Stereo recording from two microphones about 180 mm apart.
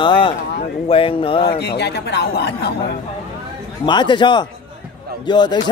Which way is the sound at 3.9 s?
25° left (ahead or behind).